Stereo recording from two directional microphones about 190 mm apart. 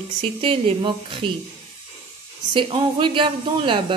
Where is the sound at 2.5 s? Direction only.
25° right (ahead or behind).